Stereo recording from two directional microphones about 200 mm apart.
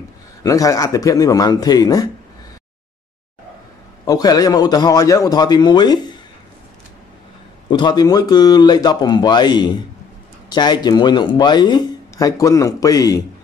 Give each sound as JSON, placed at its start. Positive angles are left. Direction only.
{"t": 0.4, "sound": "speech", "side_deg": 15}
{"t": 4.0, "sound": "speech", "side_deg": 20}
{"t": 7.7, "sound": "speech", "side_deg": 20}